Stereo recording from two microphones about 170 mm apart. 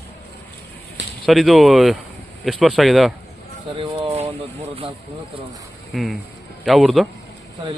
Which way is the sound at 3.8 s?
35° right (ahead or behind).